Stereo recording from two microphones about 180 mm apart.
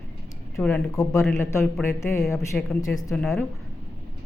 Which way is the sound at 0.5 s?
5° left (ahead or behind).